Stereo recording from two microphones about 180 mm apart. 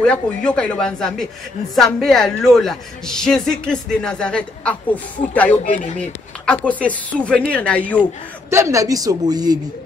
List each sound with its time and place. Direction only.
0.0 s a woman's voice: 5° left (ahead or behind)
8.0 s a man's voice: 15° right (ahead or behind)